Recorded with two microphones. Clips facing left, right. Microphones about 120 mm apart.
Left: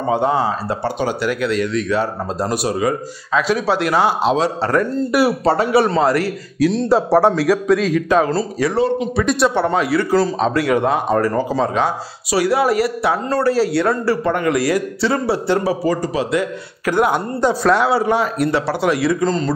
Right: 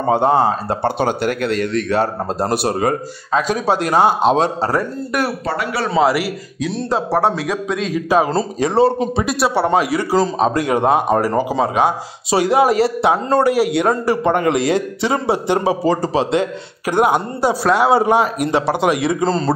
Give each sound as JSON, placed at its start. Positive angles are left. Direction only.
{"t": 0.0, "sound": "speech", "side_deg": -50}
{"t": 5.4, "sound": "speech", "side_deg": 30}
{"t": 5.9, "sound": "a man's voice", "side_deg": -5}
{"t": 6.9, "sound": "a man's voice", "side_deg": -15}
{"t": 9.2, "sound": "speech", "side_deg": -5}
{"t": 9.7, "sound": "a man's voice", "side_deg": -15}
{"t": 19.2, "sound": "speech", "side_deg": -35}